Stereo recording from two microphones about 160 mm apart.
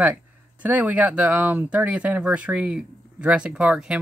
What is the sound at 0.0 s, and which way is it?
Speech, 10° right (ahead or behind).